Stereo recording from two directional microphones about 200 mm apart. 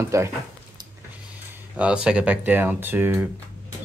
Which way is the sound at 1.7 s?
5° right (ahead or behind).